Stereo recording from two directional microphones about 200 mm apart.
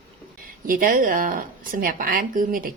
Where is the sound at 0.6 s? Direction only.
45° right (ahead or behind).